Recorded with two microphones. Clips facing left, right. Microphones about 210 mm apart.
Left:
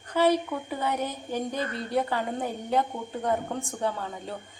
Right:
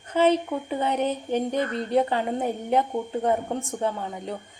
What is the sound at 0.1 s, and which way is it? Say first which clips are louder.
A woman's voice: right 2 dB; 20° right (ahead or behind).